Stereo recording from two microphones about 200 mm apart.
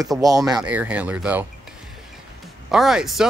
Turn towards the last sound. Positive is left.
turn(degrees=0)  # may be behind; listen again after turning